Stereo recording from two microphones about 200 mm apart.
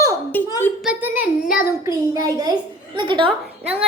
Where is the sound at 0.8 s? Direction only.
5° right (ahead or behind).